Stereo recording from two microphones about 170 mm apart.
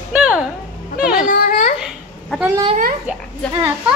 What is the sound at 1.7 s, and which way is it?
Babbling, 5° right (ahead or behind).